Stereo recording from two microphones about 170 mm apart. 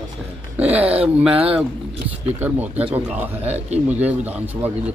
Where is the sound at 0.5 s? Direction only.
10° right (ahead or behind).